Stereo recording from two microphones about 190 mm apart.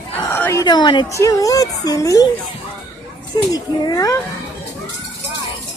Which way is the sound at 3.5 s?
20° left (ahead or behind).